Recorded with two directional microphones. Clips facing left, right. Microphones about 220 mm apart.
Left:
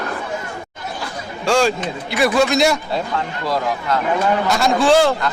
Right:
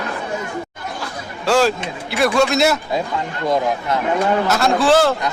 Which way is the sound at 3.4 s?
20° right (ahead or behind).